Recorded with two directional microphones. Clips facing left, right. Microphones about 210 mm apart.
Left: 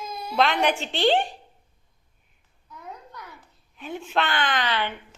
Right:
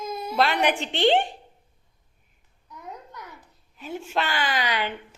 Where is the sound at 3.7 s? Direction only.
5° right (ahead or behind).